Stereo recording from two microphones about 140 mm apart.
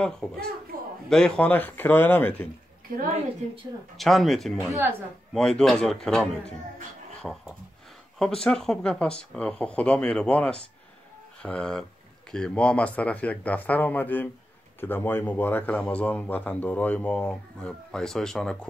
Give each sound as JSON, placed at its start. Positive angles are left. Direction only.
{"t": 0.0, "sound": "a man's voice", "side_deg": 5}
{"t": 4.0, "sound": "a man's voice", "side_deg": 0}
{"t": 4.6, "sound": "speech", "side_deg": -20}
{"t": 5.3, "sound": "a man's voice", "side_deg": 5}
{"t": 8.5, "sound": "a man's voice", "side_deg": 5}